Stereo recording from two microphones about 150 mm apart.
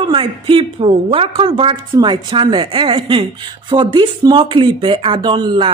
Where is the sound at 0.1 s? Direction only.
35° right (ahead or behind).